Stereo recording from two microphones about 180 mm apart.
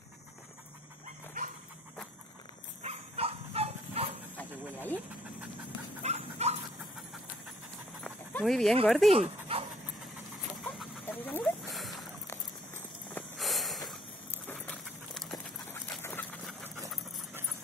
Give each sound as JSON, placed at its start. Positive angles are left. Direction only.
{"t": 2.8, "sound": "dog", "side_deg": -35}
{"t": 4.4, "sound": "vehicle", "side_deg": 10}
{"t": 6.0, "sound": "dog", "side_deg": -35}
{"t": 8.0, "sound": "dog", "side_deg": 5}
{"t": 8.8, "sound": "speech", "side_deg": 0}
{"t": 9.1, "sound": "dog", "side_deg": -30}
{"t": 10.6, "sound": "chicken", "side_deg": 0}
{"t": 11.1, "sound": "a sound", "side_deg": 10}
{"t": 12.3, "sound": "walk", "side_deg": 10}
{"t": 13.4, "sound": "a sound", "side_deg": 0}
{"t": 15.4, "sound": "dog", "side_deg": 5}